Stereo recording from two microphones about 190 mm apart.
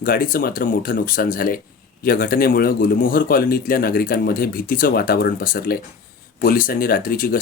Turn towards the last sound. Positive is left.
turn(degrees=50)  # may be behind; listen again after turning